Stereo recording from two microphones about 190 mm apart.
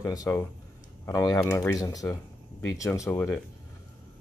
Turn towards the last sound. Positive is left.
turn(degrees=10)  # may be behind; listen again after turning